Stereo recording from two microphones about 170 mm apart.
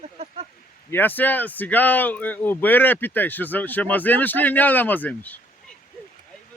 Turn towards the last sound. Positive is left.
turn(degrees=10)  # may be behind; listen again after turning